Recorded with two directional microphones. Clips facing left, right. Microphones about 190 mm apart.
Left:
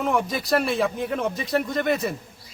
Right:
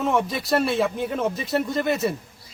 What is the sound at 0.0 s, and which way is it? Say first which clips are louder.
A man's voice: right 1 dB; centre (ahead or behind).